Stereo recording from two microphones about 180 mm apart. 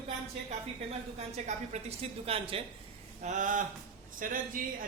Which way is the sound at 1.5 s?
35° right (ahead or behind).